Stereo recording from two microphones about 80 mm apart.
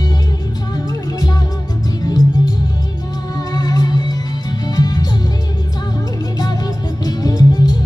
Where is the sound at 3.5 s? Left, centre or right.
Left.